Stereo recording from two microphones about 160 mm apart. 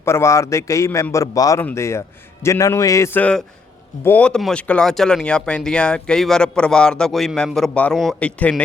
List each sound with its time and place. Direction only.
0.0 s a man's voice: 15° left (ahead or behind)